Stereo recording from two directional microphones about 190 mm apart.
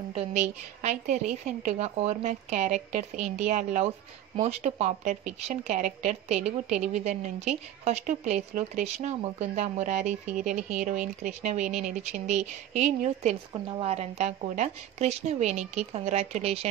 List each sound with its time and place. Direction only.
0.1 s a woman's voice: 35° right (ahead or behind)
13.5 s a woman's voice: 25° right (ahead or behind)